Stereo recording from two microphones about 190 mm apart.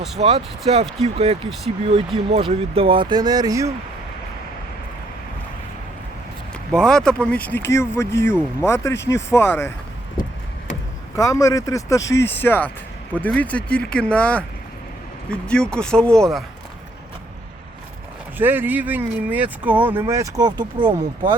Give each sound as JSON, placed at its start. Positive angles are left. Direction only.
{"t": 0.2, "sound": "speech", "side_deg": -30}
{"t": 6.5, "sound": "speech", "side_deg": 5}
{"t": 11.1, "sound": "speech", "side_deg": 15}
{"t": 18.3, "sound": "speech", "side_deg": -10}